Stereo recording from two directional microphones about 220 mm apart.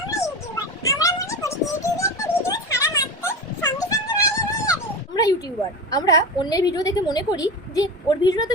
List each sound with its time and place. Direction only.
0.1 s a sound: 15° left (ahead or behind)
4.7 s dog: 15° left (ahead or behind)
5.9 s a woman's voice: 15° left (ahead or behind)